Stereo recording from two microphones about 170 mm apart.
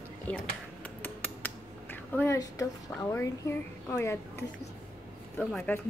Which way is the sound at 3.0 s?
15° left (ahead or behind).